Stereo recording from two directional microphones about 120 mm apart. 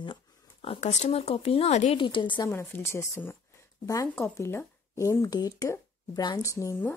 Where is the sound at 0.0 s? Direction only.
45° left (ahead or behind).